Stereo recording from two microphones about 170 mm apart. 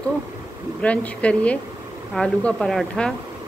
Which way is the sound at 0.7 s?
5° left (ahead or behind).